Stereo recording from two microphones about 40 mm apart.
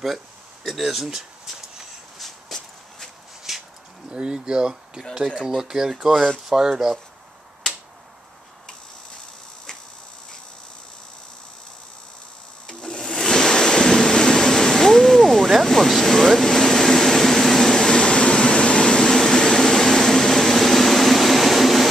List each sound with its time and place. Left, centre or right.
0.7 s speech: centre
2.1 s shuffle: centre
3.5 s a sound: centre
4.1 s speech: right
12.6 s waves: centre
17.7 s a sound: centre